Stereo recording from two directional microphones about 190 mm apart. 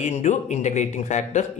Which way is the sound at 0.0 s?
40° left (ahead or behind).